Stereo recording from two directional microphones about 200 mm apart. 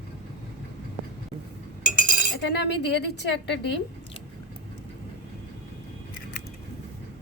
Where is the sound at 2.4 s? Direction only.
60° left (ahead or behind).